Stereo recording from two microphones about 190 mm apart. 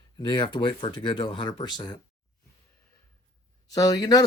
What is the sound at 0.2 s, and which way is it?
Speech, 25° left (ahead or behind).